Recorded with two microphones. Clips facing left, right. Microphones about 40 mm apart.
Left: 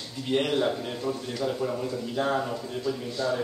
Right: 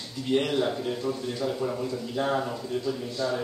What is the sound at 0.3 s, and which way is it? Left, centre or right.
Speech, centre.